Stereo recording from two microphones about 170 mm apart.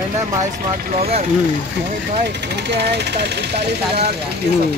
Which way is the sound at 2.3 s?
80° right.